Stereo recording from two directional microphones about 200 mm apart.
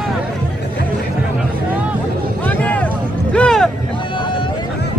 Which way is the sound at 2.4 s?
5° left (ahead or behind).